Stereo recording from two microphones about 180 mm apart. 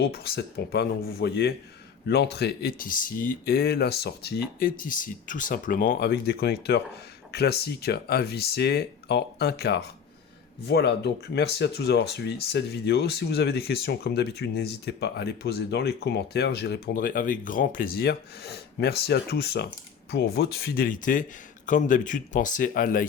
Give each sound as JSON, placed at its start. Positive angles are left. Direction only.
{"t": 0.0, "sound": "speech", "side_deg": 60}